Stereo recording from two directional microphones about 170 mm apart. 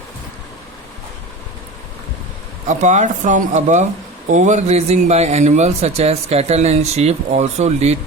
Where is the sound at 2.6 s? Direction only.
45° right (ahead or behind).